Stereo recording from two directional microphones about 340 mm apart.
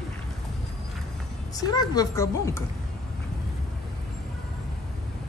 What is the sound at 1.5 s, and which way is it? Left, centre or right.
A woman's voice, centre.